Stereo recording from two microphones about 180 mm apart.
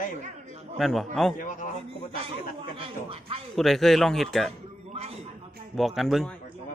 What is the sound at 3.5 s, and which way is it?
Speech, centre (ahead or behind).